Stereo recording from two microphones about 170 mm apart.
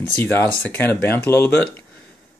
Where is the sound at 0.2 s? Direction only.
10° left (ahead or behind).